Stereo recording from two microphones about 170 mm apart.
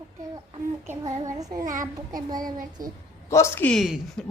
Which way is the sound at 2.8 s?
55° right (ahead or behind).